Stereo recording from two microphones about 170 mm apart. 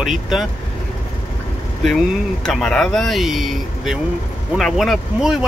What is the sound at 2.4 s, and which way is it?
Speech, 5° left (ahead or behind).